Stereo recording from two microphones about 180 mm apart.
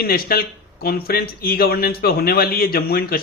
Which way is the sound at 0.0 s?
55° left (ahead or behind).